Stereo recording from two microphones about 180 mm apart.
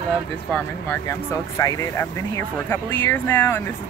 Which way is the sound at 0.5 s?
10° left (ahead or behind).